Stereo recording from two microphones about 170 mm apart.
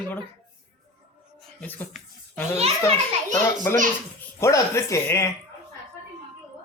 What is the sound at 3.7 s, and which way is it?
Speech, 15° left (ahead or behind).